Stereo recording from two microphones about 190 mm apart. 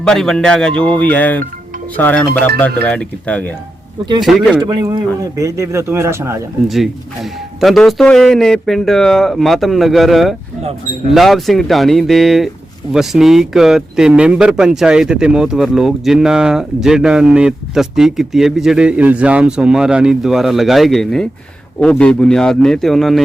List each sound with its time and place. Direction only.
0.0 s speech: 5° left (ahead or behind)
4.6 s speech: 20° right (ahead or behind)
6.7 s speech: centre (ahead or behind)